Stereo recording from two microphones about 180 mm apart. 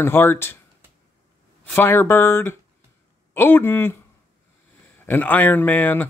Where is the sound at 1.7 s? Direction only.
10° left (ahead or behind).